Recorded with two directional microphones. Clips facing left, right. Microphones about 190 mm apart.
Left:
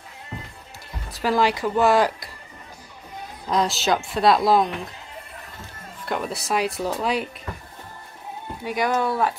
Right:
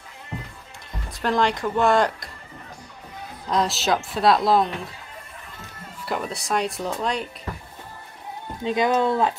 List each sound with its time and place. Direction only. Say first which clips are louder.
1.1 s speech: left 1 dB; 5° left (ahead or behind)
3.4 s speech: left 1 dB; centre (ahead or behind)
6.0 s speech: left 1 dB; centre (ahead or behind)
8.6 s speech: right 3 dB; 20° right (ahead or behind)